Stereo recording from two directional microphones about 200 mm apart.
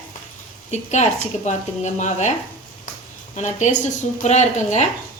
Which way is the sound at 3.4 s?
35° left (ahead or behind).